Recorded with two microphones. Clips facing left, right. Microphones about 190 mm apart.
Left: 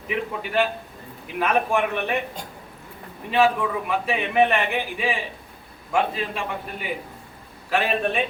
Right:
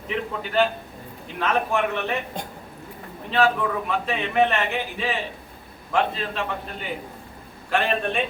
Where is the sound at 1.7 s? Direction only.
15° left (ahead or behind).